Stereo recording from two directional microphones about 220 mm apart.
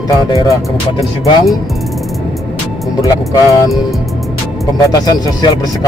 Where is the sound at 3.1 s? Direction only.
15° left (ahead or behind).